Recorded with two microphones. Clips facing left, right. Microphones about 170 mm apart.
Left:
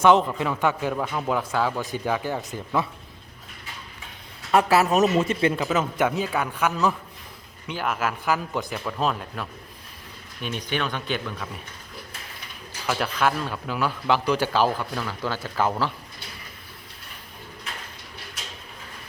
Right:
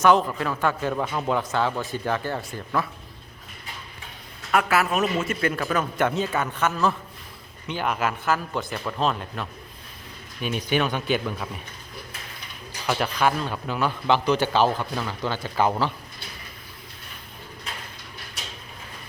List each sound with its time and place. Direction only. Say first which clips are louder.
0.0 s speech: left 1 dB; 20° left (ahead or behind)
0.9 s a man's voice: right 1 dB; centre (ahead or behind); by 2.8 s 15° left (ahead or behind)
4.5 s speech: left 3 dB; 30° left (ahead or behind)
5.4 s a man's voice: left 2 dB; 20° left (ahead or behind); by 9.5 s 5° left (ahead or behind)
10.4 s speech: right 4 dB; 10° right (ahead or behind)
12.9 s a man's voice: right 1 dB; centre (ahead or behind)